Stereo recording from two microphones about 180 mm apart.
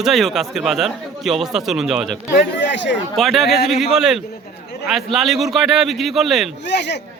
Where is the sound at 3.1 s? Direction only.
Centre (ahead or behind).